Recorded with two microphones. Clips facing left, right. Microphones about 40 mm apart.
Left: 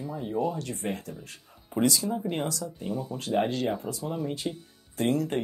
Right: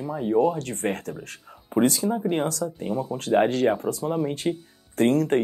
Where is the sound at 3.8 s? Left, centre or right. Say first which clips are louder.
Right 7 dB; right.